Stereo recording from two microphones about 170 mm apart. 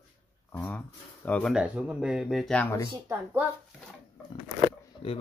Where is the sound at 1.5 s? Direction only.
5° right (ahead or behind).